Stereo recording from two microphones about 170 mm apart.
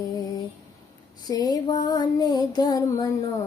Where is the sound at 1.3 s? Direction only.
25° left (ahead or behind).